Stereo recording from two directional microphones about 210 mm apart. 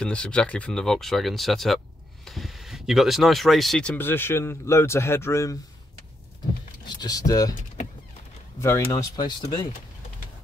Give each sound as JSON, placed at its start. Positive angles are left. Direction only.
{"t": 0.0, "sound": "speech", "side_deg": 5}
{"t": 7.0, "sound": "speech", "side_deg": 15}
{"t": 8.5, "sound": "speech", "side_deg": 10}